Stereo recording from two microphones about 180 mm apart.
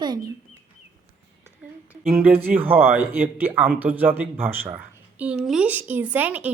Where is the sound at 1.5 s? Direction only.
5° right (ahead or behind).